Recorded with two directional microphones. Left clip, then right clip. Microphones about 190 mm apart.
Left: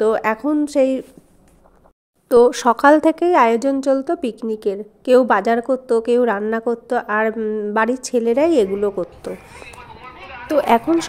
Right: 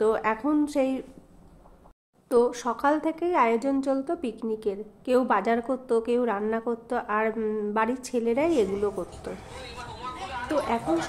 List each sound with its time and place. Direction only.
0.0 s a woman's voice: 35° left (ahead or behind)
2.2 s a woman's voice: 40° left (ahead or behind); by 7.7 s 25° left (ahead or behind)
7.7 s a woman's voice: 35° left (ahead or behind)